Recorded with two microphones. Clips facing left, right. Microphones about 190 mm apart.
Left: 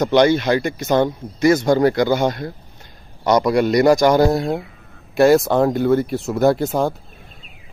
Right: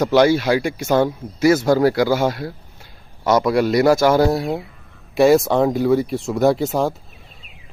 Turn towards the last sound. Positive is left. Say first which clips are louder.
# even
turn(degrees=0)  # may be behind; listen again after turning